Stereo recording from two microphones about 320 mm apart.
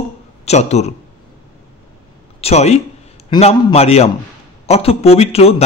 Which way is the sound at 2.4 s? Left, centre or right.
Centre.